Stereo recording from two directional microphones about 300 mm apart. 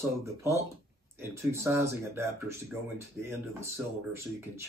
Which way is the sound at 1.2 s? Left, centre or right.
Centre.